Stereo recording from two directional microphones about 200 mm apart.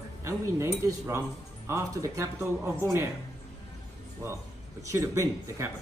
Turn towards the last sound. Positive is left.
turn(degrees=-15)  # may be behind; listen again after turning